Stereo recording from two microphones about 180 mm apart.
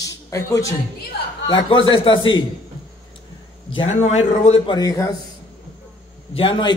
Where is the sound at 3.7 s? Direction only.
35° left (ahead or behind).